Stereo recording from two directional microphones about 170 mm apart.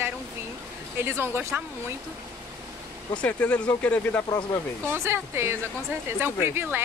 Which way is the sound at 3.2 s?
10° left (ahead or behind).